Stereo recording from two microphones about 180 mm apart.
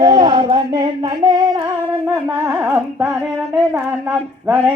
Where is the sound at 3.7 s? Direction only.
10° right (ahead or behind).